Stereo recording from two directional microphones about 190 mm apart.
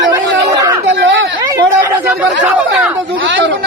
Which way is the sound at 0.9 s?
70° right (ahead or behind).